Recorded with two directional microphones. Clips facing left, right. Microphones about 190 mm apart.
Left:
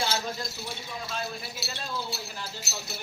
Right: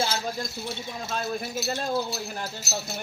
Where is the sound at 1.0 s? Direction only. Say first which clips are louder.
Right 6 dB; 45° right (ahead or behind).